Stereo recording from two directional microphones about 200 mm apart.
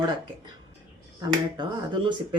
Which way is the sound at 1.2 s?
20° right (ahead or behind).